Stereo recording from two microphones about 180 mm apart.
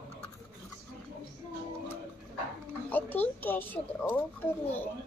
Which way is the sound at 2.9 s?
10° left (ahead or behind).